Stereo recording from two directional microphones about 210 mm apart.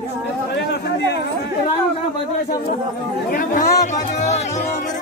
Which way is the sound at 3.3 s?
40° left (ahead or behind).